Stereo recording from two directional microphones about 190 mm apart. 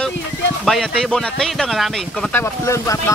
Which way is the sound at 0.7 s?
Centre (ahead or behind).